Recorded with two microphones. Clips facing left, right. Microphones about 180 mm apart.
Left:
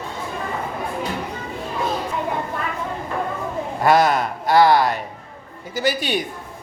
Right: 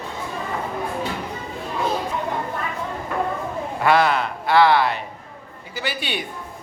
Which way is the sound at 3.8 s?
40° left (ahead or behind).